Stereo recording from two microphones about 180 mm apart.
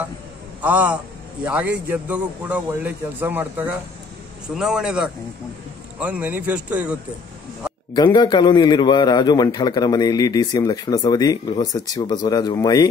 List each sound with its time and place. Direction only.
0.6 s a man's voice: 10° right (ahead or behind)
7.9 s a man's voice: 25° left (ahead or behind)